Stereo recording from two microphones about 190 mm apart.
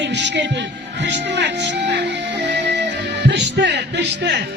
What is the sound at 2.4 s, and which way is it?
Music, 65° right (ahead or behind).